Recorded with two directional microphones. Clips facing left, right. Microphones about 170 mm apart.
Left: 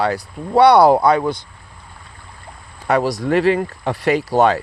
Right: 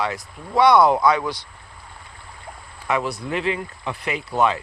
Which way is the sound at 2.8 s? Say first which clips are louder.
Left 6 dB; 40° left (ahead or behind).